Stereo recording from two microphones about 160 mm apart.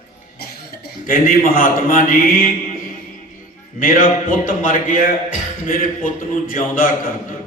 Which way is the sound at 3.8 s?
60° left (ahead or behind).